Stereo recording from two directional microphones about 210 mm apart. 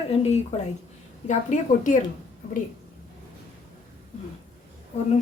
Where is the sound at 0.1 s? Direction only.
30° left (ahead or behind).